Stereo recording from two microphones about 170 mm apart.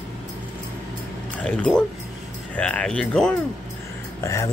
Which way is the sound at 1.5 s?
5° left (ahead or behind).